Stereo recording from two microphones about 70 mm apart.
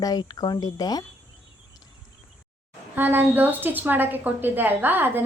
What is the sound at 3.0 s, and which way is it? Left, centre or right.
A woman's voice, right.